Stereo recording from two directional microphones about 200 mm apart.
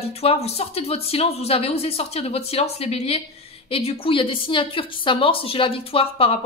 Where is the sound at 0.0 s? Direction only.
30° left (ahead or behind).